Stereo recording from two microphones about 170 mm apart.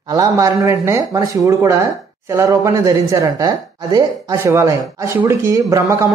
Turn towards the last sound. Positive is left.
turn(degrees=-20)  # may be behind; listen again after turning